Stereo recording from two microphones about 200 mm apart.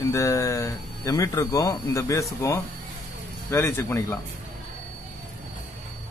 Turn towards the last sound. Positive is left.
turn(degrees=10)  # may be behind; listen again after turning